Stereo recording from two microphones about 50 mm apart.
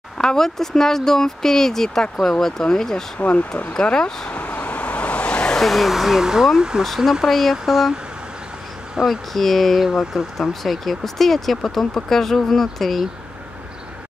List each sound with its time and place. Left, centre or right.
0.2 s speech: centre
3.2 s speech: left
3.8 s vehicle: centre
5.6 s speech: centre
7.1 s speech: centre
8.9 s speech: centre
9.8 s speech: centre
10.3 s speech: centre